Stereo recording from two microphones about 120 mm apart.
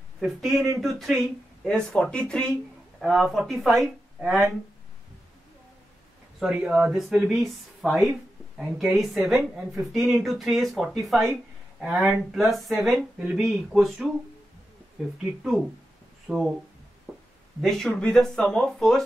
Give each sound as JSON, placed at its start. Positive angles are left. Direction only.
{"t": 0.2, "sound": "speech", "side_deg": 0}
{"t": 6.4, "sound": "speech", "side_deg": -5}
{"t": 16.3, "sound": "speech", "side_deg": -5}
{"t": 17.1, "sound": "a sound", "side_deg": -20}
{"t": 17.6, "sound": "speech", "side_deg": 5}